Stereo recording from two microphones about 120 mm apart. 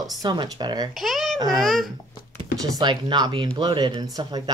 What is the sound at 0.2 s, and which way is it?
Speech, 35° right (ahead or behind).